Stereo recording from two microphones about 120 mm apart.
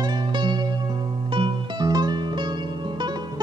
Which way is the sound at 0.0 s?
40° right (ahead or behind).